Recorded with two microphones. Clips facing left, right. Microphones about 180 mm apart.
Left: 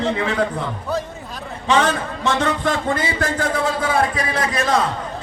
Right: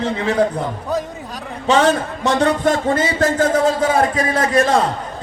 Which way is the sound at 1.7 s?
40° right (ahead or behind).